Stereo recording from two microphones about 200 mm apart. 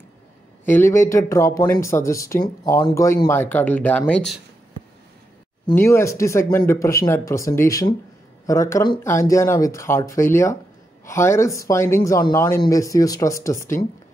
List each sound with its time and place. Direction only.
0.7 s speech: 10° left (ahead or behind)
5.7 s speech: 15° left (ahead or behind)